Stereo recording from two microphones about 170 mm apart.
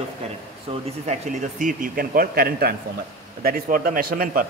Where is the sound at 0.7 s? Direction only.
40° right (ahead or behind).